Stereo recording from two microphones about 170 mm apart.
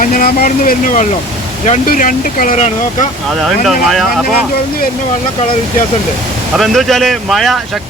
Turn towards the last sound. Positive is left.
turn(degrees=0)  # may be behind; listen again after turning